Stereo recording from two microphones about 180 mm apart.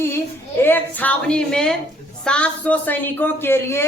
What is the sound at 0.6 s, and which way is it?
A woman's voice, 10° left (ahead or behind).